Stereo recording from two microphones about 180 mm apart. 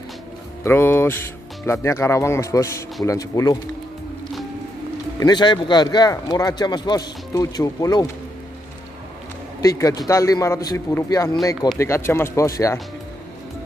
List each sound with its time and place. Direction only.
0.7 s speech: 10° left (ahead or behind)
5.2 s speech: 25° left (ahead or behind)
9.6 s speech: 20° left (ahead or behind)